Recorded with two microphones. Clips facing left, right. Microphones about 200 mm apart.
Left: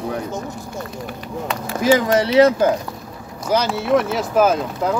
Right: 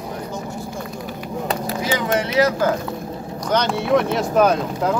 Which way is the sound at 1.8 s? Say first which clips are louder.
Left 8 dB; 40° left (ahead or behind).